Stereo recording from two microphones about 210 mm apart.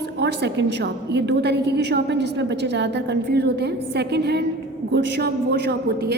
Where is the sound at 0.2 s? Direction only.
55° right (ahead or behind).